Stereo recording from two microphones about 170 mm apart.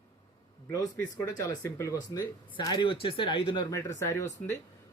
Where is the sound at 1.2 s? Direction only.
20° left (ahead or behind).